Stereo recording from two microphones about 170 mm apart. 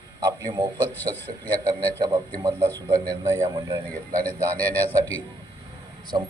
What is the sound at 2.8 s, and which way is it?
A man's voice, 20° right (ahead or behind).